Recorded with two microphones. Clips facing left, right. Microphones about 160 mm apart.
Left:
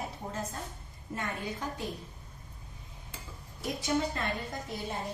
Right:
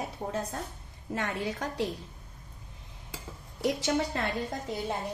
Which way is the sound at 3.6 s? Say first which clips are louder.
Right 3 dB; 90° right.